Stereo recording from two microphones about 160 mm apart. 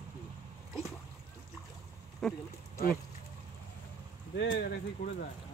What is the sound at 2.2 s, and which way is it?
Speech, 5° left (ahead or behind).